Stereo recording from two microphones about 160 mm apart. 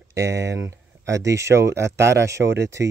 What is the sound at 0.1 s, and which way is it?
Speech, 20° right (ahead or behind).